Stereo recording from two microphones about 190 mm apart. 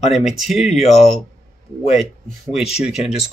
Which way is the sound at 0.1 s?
Centre (ahead or behind).